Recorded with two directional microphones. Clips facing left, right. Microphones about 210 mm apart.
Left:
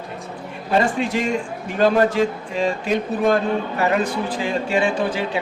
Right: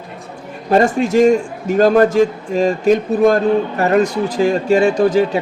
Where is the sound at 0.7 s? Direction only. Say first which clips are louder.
Right 6 dB; 45° right (ahead or behind).